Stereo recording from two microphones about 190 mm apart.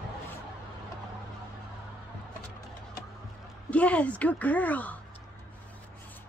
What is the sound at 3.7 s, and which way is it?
A woman's voice, 5° left (ahead or behind).